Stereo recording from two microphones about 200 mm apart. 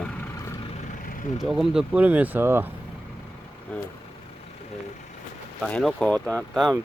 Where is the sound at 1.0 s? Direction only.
45° left (ahead or behind).